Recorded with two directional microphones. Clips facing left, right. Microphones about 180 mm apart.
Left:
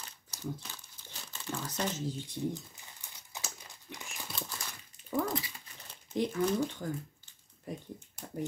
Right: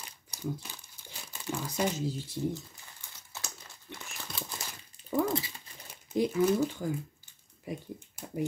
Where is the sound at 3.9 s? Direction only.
Centre (ahead or behind).